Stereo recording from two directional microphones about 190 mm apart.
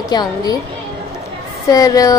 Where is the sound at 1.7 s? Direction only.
20° left (ahead or behind).